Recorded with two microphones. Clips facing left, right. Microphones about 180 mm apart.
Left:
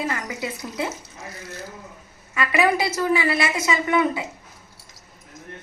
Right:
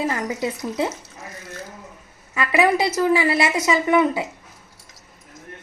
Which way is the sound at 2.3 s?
25° right (ahead or behind).